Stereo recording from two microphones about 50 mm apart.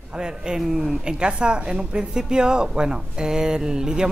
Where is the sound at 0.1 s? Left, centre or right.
Centre.